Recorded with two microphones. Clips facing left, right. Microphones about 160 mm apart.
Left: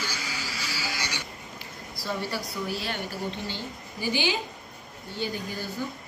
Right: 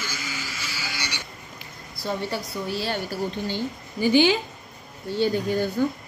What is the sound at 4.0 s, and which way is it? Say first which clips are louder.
A woman's voice: right 9 dB; 55° right (ahead or behind).